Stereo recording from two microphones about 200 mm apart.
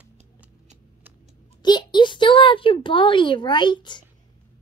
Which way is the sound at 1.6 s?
20° left (ahead or behind).